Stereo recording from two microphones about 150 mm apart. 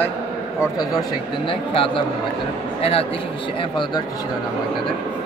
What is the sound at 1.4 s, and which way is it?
A man's voice, 35° left (ahead or behind).